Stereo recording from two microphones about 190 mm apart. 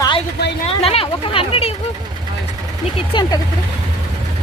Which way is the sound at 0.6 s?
30° left (ahead or behind).